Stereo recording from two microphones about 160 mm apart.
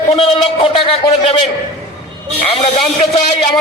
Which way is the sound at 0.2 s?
35° left (ahead or behind).